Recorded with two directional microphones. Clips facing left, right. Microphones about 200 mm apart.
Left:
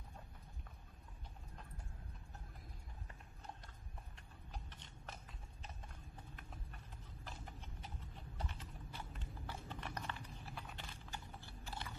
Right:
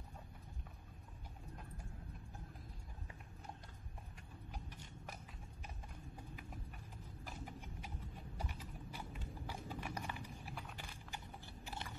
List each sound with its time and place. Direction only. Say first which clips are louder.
4.5 s a sound: right 2 dB; 10° right (ahead or behind)
7.2 s horse: right 3 dB; 10° right (ahead or behind)
8.4 s clip-clop: right 1 dB; 10° right (ahead or behind)
10.8 s horse: even; 15° right (ahead or behind)